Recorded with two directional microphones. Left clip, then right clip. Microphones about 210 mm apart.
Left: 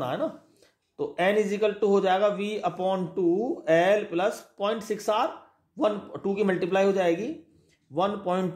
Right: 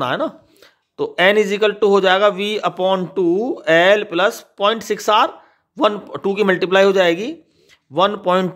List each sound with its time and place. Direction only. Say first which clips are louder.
0.0 s speech: right 9 dB; 40° right (ahead or behind)